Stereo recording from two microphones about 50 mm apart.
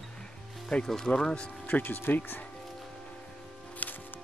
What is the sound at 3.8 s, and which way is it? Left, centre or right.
Music, left.